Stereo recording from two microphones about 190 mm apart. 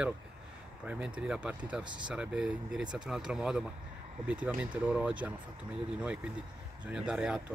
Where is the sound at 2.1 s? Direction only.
5° right (ahead or behind).